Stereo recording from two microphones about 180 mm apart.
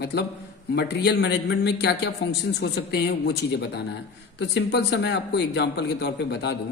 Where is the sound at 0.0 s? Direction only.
65° left (ahead or behind).